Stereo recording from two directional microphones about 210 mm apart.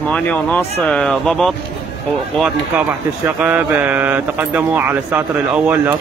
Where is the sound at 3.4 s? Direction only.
5° right (ahead or behind).